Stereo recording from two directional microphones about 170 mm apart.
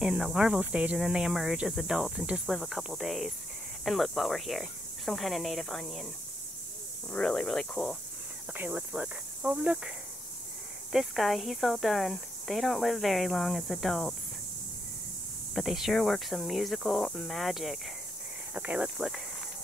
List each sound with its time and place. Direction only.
0.0 s speech: 5° right (ahead or behind)
7.1 s speech: 5° left (ahead or behind)
8.5 s speech: 5° right (ahead or behind)
15.5 s speech: centre (ahead or behind)